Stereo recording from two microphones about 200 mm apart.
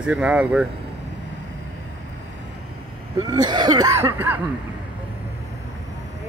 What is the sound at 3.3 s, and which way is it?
Speech, 20° right (ahead or behind).